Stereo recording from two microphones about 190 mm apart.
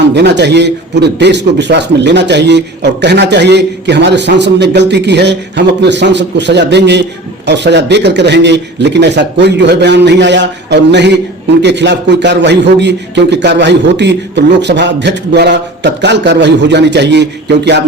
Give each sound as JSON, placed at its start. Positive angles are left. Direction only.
{"t": 0.1, "sound": "a man's voice", "side_deg": -65}